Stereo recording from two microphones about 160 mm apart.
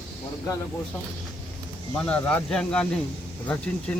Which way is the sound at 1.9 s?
10° left (ahead or behind).